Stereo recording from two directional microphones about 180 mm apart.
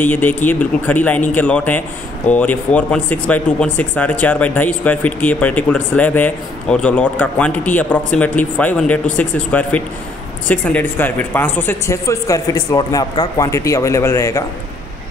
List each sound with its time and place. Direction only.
0.0 s speech: 10° left (ahead or behind)